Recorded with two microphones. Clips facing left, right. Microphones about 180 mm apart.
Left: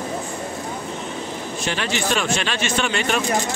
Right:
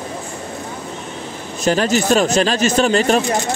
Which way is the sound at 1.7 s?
40° right (ahead or behind).